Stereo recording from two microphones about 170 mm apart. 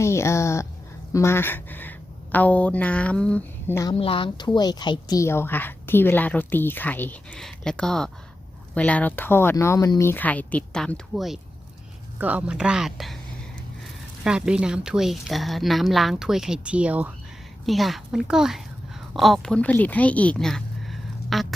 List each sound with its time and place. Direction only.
0.0 s speech: 15° left (ahead or behind)
3.9 s speech: 35° left (ahead or behind); by 21.4 s centre (ahead or behind)